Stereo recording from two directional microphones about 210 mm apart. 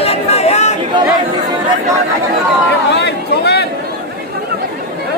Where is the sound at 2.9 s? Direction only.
50° left (ahead or behind).